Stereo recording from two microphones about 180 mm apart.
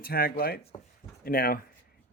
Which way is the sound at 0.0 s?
55° left (ahead or behind).